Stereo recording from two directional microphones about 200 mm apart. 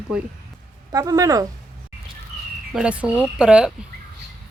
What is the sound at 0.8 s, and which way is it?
Speech, 20° right (ahead or behind).